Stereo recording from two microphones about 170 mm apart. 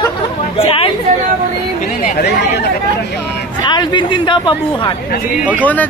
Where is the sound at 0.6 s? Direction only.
35° left (ahead or behind).